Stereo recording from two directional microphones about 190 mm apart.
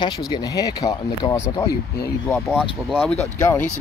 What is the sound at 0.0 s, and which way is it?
Speech, 20° left (ahead or behind).